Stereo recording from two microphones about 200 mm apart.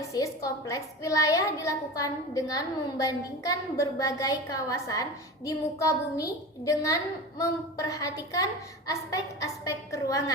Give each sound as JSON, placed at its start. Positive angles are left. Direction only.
{"t": 0.1, "sound": "a woman's voice", "side_deg": 15}